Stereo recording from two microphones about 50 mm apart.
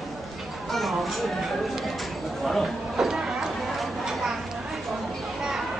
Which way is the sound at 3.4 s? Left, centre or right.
Centre.